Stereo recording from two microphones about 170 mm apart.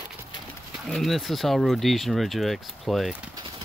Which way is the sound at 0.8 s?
Centre (ahead or behind).